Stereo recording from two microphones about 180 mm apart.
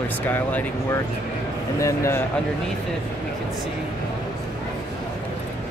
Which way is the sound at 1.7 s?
15° left (ahead or behind).